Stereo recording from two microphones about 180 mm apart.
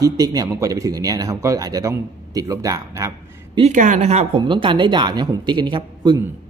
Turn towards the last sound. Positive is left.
turn(degrees=-25)  # may be behind; listen again after turning